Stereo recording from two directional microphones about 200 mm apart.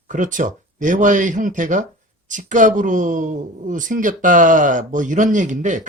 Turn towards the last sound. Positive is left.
turn(degrees=-40)  # may be behind; listen again after turning